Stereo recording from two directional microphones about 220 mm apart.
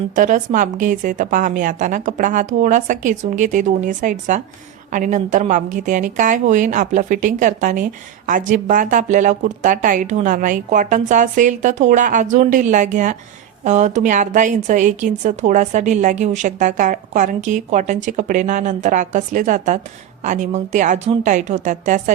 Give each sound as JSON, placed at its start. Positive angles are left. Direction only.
{"t": 0.2, "sound": "a woman's voice", "side_deg": -35}